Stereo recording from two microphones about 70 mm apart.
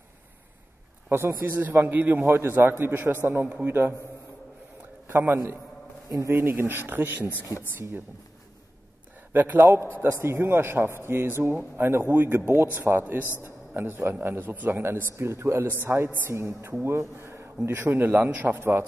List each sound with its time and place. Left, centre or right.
1.1 s a man's voice: right
5.0 s a man's voice: right
6.0 s a man's voice: right
9.3 s a man's voice: right